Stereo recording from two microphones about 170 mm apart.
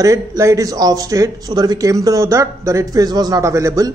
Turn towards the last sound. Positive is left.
turn(degrees=-20)  # may be behind; listen again after turning